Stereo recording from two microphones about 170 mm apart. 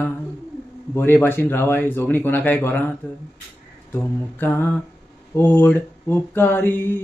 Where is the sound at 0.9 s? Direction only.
10° left (ahead or behind).